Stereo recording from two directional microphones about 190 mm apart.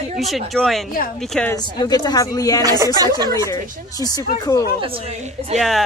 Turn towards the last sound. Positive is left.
turn(degrees=-35)  # may be behind; listen again after turning